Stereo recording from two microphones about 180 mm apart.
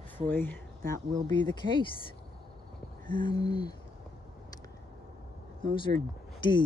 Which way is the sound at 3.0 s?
25° left (ahead or behind).